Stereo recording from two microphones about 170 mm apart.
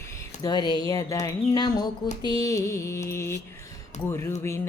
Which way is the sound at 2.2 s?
20° left (ahead or behind).